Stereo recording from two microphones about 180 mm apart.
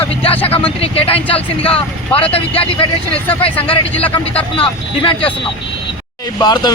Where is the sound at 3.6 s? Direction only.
10° left (ahead or behind).